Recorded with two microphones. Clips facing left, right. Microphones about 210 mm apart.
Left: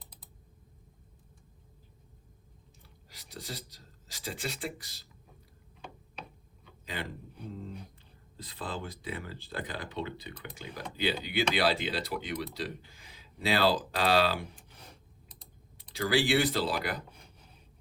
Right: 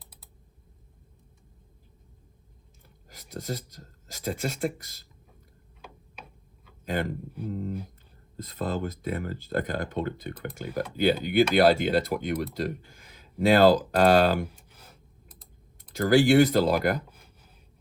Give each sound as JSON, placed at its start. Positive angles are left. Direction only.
{"t": 3.1, "sound": "speech", "side_deg": -45}
{"t": 6.8, "sound": "speech", "side_deg": -50}
{"t": 8.4, "sound": "speech", "side_deg": -45}
{"t": 14.5, "sound": "computer keyboard", "side_deg": -5}
{"t": 15.8, "sound": "speech", "side_deg": -45}
{"t": 17.1, "sound": "a sound", "side_deg": -5}